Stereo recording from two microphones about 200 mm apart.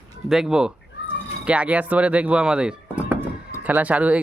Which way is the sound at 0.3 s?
Centre (ahead or behind).